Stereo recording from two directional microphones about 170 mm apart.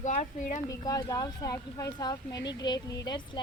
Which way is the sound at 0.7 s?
20° left (ahead or behind).